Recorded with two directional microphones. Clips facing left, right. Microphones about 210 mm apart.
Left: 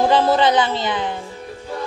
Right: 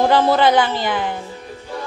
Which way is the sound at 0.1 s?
20° left (ahead or behind).